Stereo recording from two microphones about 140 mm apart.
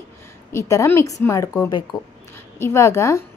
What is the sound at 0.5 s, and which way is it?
Speech, 20° left (ahead or behind).